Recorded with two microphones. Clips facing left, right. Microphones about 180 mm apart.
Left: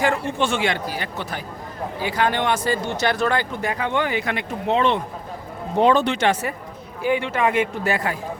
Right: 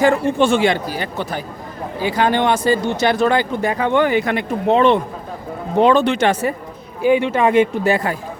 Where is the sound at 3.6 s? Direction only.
35° right (ahead or behind).